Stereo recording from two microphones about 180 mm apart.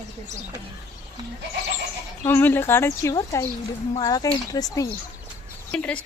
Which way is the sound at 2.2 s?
10° left (ahead or behind).